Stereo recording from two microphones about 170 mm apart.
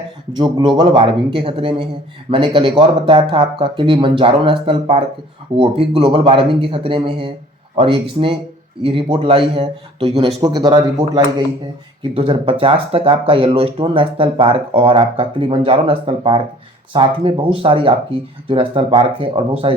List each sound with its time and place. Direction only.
0.3 s speech: 25° right (ahead or behind)